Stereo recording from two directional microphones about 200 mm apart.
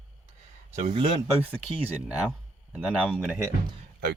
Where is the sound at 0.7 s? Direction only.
30° right (ahead or behind).